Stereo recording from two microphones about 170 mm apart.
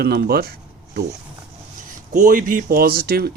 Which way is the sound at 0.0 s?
65° right (ahead or behind).